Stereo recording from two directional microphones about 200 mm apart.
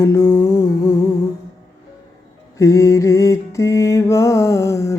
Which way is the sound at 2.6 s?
15° left (ahead or behind).